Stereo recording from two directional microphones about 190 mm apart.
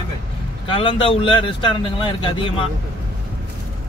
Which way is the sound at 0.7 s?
25° left (ahead or behind).